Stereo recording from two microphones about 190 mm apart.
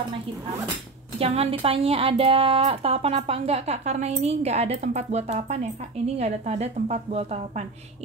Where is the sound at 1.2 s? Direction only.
30° right (ahead or behind).